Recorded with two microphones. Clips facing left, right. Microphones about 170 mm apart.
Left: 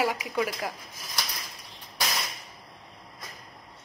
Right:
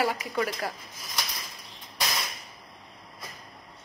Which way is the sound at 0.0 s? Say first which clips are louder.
Even; 10° left (ahead or behind).